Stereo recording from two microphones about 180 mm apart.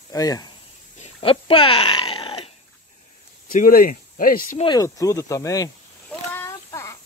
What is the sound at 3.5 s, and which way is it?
Speech, 50° left (ahead or behind).